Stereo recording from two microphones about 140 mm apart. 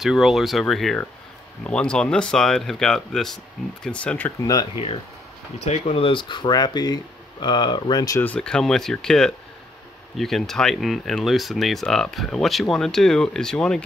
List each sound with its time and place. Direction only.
0.0 s speech: centre (ahead or behind)
4.4 s speech: 25° left (ahead or behind)
5.7 s speech: 45° left (ahead or behind); by 8.2 s 30° left (ahead or behind)
8.2 s speech: 10° left (ahead or behind)